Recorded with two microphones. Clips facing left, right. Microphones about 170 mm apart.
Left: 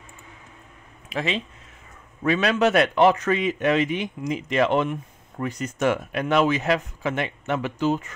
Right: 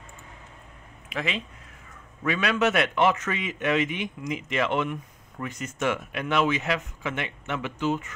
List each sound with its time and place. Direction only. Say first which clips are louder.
1.0 s a man's voice: left 4 dB; 30° left (ahead or behind)